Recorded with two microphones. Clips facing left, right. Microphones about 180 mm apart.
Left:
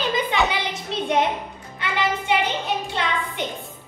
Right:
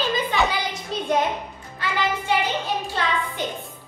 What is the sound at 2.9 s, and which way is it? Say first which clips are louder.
Speech: even; 20° left (ahead or behind).